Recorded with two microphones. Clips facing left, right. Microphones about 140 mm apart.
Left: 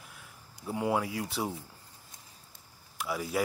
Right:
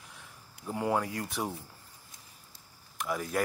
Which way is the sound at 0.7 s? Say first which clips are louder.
Even; 10° left (ahead or behind).